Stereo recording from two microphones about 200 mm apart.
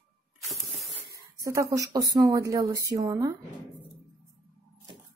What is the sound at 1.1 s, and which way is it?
Speech, 15° right (ahead or behind).